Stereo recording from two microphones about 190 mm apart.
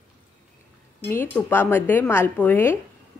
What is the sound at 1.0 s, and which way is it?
A woman's voice, 10° left (ahead or behind).